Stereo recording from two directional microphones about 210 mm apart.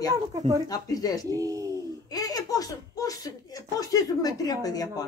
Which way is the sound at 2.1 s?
15° left (ahead or behind).